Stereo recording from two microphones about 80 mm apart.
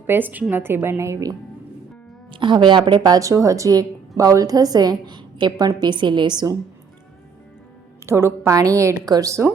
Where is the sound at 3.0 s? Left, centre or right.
Right.